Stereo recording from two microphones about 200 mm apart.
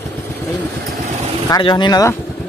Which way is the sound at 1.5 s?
25° left (ahead or behind).